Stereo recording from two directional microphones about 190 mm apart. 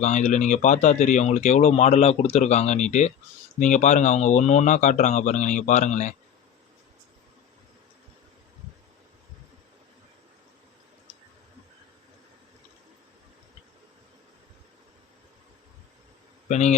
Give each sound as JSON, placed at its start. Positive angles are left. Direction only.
{"t": 0.0, "sound": "speech", "side_deg": 40}
{"t": 16.5, "sound": "a man's voice", "side_deg": 40}